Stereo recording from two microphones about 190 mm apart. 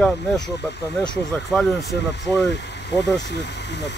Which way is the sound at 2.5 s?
65° left (ahead or behind).